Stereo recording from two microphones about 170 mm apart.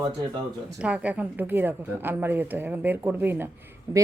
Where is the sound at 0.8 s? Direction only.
5° right (ahead or behind).